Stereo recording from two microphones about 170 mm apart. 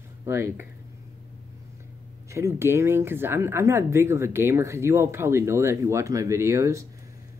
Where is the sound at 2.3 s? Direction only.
15° right (ahead or behind).